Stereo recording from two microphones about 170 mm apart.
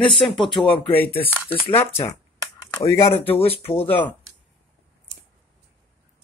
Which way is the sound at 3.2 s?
35° left (ahead or behind).